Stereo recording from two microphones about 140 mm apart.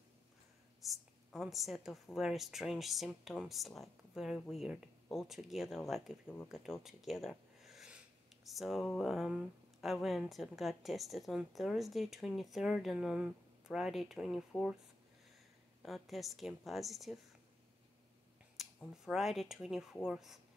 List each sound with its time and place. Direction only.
0.8 s speech: centre (ahead or behind)
6.2 s speech: 15° left (ahead or behind)
6.5 s speech: centre (ahead or behind)
15.8 s speech: centre (ahead or behind)
18.6 s a sound: centre (ahead or behind)
19.0 s speech: centre (ahead or behind)